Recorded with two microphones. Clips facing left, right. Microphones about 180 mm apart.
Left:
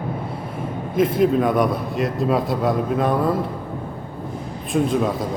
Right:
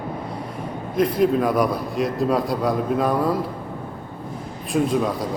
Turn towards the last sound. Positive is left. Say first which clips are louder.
# left 1 dB
turn(degrees=0)  # may be behind; listen again after turning